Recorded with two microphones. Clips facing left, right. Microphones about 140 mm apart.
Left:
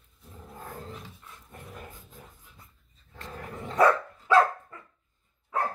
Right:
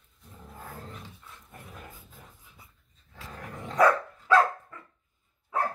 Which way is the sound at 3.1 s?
Centre (ahead or behind).